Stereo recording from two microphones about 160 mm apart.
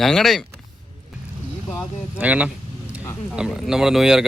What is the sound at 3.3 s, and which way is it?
Speech, 5° right (ahead or behind).